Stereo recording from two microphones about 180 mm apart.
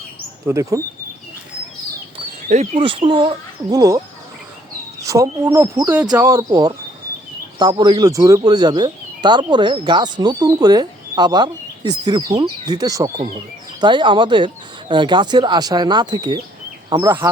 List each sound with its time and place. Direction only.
0.4 s speech: 15° right (ahead or behind)
2.5 s speech: 40° right (ahead or behind); by 17.2 s 20° right (ahead or behind)